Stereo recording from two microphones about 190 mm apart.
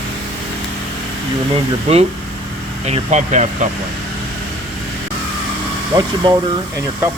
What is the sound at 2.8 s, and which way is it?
Speech, 40° right (ahead or behind).